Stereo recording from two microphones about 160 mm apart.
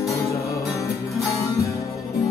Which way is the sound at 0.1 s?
20° left (ahead or behind).